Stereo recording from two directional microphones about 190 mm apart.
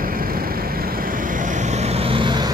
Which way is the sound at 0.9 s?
45° right (ahead or behind).